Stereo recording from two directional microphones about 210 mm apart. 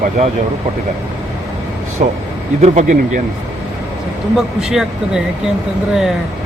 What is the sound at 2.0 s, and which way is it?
Speech, 40° right (ahead or behind).